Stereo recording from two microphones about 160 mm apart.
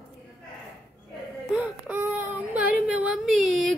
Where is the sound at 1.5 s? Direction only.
10° right (ahead or behind).